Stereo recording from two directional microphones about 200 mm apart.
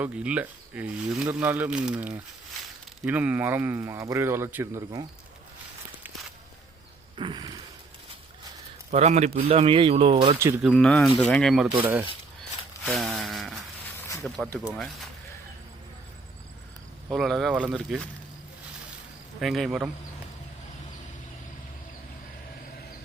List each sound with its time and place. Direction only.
0.0 s speech: 5° right (ahead or behind)
7.2 s speech: 25° right (ahead or behind)
8.9 s speech: 35° right (ahead or behind)
10.7 s speech: 5° left (ahead or behind)
17.1 s speech: centre (ahead or behind)
19.4 s speech: centre (ahead or behind)